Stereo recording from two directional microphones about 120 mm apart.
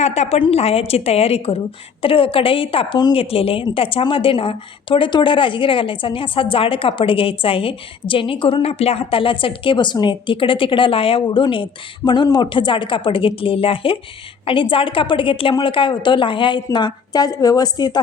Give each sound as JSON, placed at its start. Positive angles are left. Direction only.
{"t": 0.0, "sound": "a woman's voice", "side_deg": 65}